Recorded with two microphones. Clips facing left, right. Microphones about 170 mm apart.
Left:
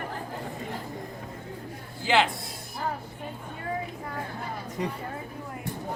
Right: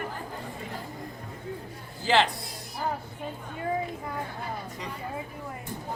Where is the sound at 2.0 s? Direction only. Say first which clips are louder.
Even; centre (ahead or behind).